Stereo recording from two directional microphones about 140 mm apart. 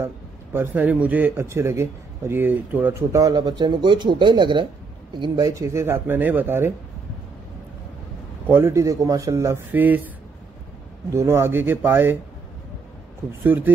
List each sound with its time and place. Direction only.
0.0 s speech: 15° right (ahead or behind)
8.5 s speech: 15° right (ahead or behind)
11.1 s speech: 20° right (ahead or behind)
13.4 s speech: 15° right (ahead or behind)